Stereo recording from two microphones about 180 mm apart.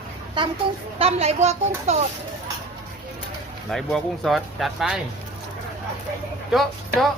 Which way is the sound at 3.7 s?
Centre (ahead or behind).